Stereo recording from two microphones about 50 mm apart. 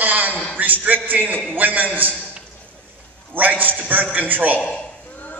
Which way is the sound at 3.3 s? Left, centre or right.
Right.